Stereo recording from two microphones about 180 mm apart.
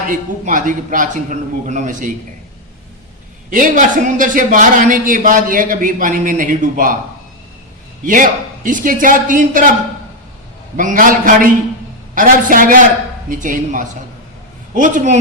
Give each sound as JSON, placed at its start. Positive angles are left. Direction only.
{"t": 0.1, "sound": "a man's voice", "side_deg": -45}
{"t": 3.5, "sound": "a man's voice", "side_deg": -45}
{"t": 8.0, "sound": "a man's voice", "side_deg": -45}
{"t": 10.8, "sound": "a man's voice", "side_deg": -45}